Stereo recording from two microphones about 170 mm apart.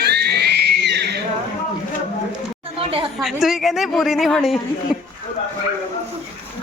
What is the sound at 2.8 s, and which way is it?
Chatter, 35° right (ahead or behind).